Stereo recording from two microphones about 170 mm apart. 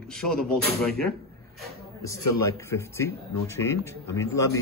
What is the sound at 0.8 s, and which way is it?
Speech, 5° left (ahead or behind).